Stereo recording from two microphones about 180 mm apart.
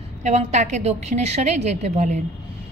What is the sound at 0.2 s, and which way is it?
A woman's voice, 40° right (ahead or behind).